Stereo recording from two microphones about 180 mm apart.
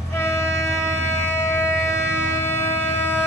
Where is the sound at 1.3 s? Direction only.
15° left (ahead or behind).